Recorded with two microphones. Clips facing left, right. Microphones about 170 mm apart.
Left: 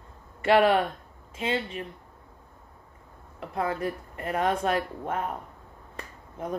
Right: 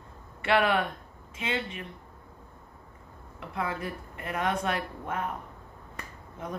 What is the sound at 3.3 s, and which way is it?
Speech, 40° left (ahead or behind).